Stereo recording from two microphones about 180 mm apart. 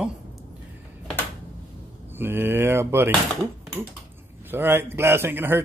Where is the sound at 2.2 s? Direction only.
10° right (ahead or behind).